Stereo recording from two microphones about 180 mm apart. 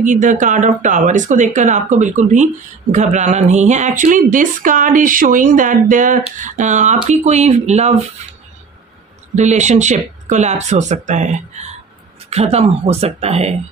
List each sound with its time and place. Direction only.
0.0 s speech: 45° right (ahead or behind)
9.3 s speech: 40° right (ahead or behind)